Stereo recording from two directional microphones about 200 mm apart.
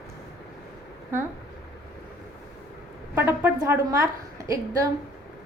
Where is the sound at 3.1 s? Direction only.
10° right (ahead or behind).